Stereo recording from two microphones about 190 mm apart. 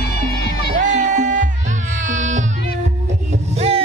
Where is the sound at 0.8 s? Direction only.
40° right (ahead or behind).